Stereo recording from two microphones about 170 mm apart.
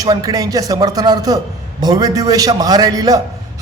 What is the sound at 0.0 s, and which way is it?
A man's voice, 20° right (ahead or behind).